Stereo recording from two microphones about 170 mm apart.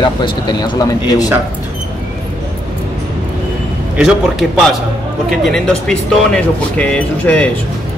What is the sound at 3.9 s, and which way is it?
Speech, 5° right (ahead or behind).